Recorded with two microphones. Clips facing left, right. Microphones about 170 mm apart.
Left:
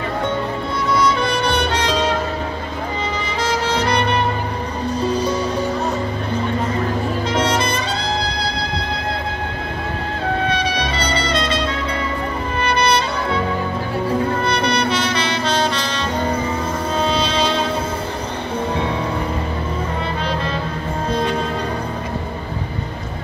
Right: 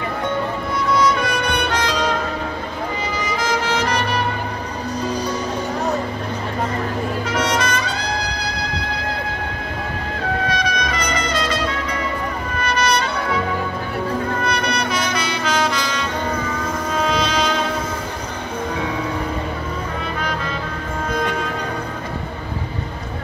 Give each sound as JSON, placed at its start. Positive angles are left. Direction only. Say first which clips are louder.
{"t": 1.2, "sound": "music", "louder": "left 2 dB", "side_deg": 30}
{"t": 3.3, "sound": "music", "louder": "even", "side_deg": 30}
{"t": 7.2, "sound": "music", "louder": "left 2 dB", "side_deg": 30}
{"t": 10.5, "sound": "trumpet", "louder": "left 1 dB", "side_deg": 30}
{"t": 12.6, "sound": "music", "louder": "left 2 dB", "side_deg": 30}
{"t": 14.4, "sound": "music", "louder": "left 3 dB", "side_deg": 30}
{"t": 21.1, "sound": "music", "louder": "left 2 dB", "side_deg": 30}